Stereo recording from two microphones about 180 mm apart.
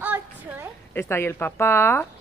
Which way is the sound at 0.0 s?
10° right (ahead or behind).